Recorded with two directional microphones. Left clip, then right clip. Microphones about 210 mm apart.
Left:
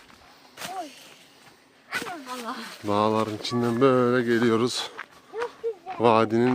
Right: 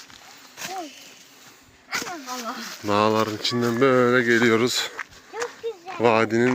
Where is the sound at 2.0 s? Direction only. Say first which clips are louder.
Right 3 dB; 40° right (ahead or behind).